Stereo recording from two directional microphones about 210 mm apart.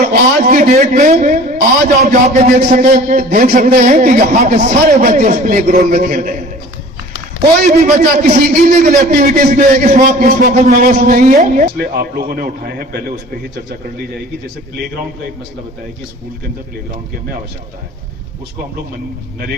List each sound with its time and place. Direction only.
0.4 s a man's voice: 40° right (ahead or behind)
7.6 s a man's voice: 40° right (ahead or behind)